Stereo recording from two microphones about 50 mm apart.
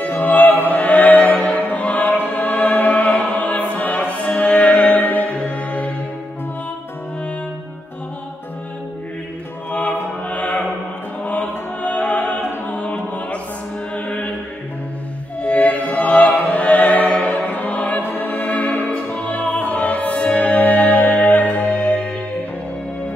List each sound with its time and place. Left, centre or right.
0.0 s opera: left
2.1 s music: left
9.7 s music: left
15.4 s music: left
18.0 s opera: left